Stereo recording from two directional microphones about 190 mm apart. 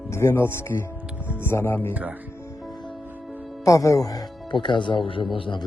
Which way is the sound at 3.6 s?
15° left (ahead or behind).